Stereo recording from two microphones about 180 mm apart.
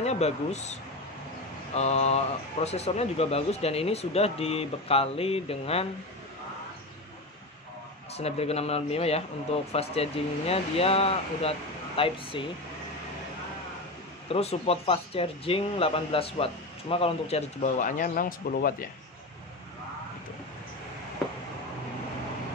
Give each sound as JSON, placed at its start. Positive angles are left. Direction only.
{"t": 0.0, "sound": "speech", "side_deg": 35}
{"t": 8.1, "sound": "speech", "side_deg": 35}
{"t": 14.3, "sound": "speech", "side_deg": 35}